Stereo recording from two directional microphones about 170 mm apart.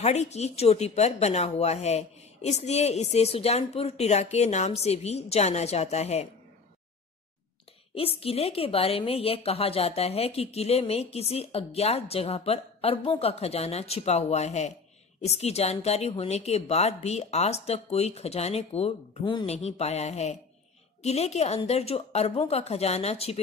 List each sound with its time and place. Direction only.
0.0 s a woman's voice: 40° left (ahead or behind)
7.9 s a woman's voice: 35° left (ahead or behind)